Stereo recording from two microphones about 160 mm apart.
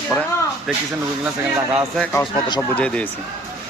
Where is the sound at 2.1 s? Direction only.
25° left (ahead or behind).